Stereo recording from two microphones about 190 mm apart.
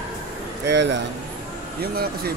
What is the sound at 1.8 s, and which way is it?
Speech, 55° right (ahead or behind).